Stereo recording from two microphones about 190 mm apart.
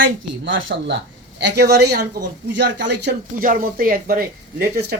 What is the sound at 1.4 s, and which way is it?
Speech, 60° right (ahead or behind).